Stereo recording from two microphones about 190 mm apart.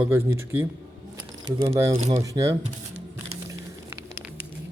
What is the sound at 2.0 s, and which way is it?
Speech, 20° right (ahead or behind).